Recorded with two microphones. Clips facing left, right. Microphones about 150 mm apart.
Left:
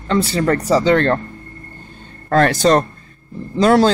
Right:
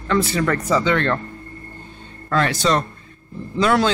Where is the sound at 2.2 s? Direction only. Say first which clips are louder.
Left 6 dB; 45° left (ahead or behind).